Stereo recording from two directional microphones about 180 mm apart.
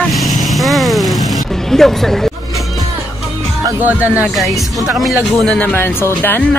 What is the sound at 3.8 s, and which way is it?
Speech, 10° right (ahead or behind).